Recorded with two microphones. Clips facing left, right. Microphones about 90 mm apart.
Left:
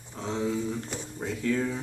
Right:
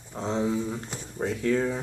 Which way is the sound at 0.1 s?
30° right (ahead or behind).